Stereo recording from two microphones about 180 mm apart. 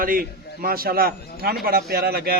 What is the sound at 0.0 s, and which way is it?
A man's voice, 50° right (ahead or behind).